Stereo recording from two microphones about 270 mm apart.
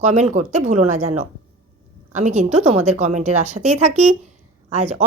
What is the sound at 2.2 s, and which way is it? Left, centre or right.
Speech, right.